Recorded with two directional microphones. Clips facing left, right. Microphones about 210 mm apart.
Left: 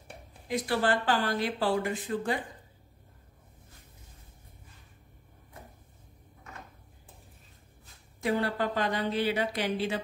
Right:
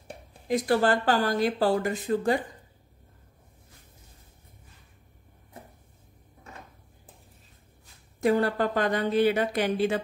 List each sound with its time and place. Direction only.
0.5 s speech: 45° right (ahead or behind)
8.2 s speech: 45° right (ahead or behind)